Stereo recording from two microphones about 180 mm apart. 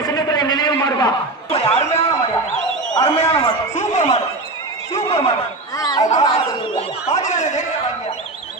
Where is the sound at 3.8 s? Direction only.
40° left (ahead or behind).